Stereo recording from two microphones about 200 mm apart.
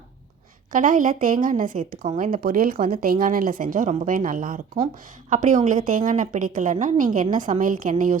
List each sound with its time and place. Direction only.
0.7 s a woman's voice: 40° right (ahead or behind)